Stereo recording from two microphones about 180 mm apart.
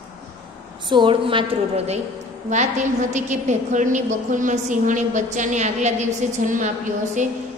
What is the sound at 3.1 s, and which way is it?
A woman's voice, 40° right (ahead or behind).